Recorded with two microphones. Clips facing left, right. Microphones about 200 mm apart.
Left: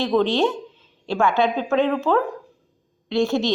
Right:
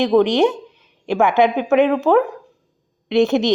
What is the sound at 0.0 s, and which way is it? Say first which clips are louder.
A woman's voice: right 5 dB; 15° right (ahead or behind).